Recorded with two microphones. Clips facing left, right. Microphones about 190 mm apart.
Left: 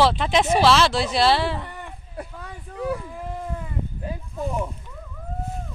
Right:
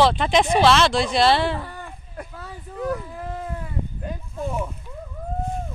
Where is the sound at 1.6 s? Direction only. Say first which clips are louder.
Right 1 dB; 20° left (ahead or behind).